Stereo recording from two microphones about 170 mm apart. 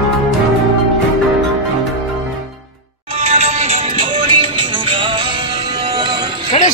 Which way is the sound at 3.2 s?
40° right (ahead or behind).